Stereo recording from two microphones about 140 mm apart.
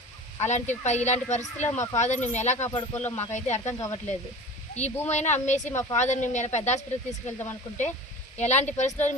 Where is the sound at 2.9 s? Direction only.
20° left (ahead or behind).